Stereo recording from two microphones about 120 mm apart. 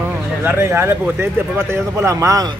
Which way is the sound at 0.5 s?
20° right (ahead or behind).